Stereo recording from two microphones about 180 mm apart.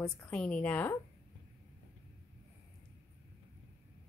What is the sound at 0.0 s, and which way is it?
Speech, 5° left (ahead or behind).